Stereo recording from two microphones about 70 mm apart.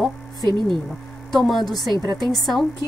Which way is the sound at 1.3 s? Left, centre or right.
Centre.